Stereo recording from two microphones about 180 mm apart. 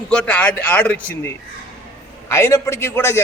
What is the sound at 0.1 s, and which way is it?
A man's voice, 5° left (ahead or behind).